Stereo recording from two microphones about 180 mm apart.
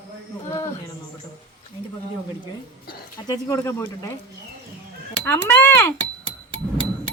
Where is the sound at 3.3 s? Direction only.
15° left (ahead or behind).